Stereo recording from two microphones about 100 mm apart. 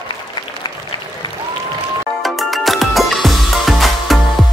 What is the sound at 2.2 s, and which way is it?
Music, centre (ahead or behind).